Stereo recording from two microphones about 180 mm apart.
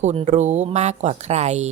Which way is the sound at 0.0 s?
40° right (ahead or behind).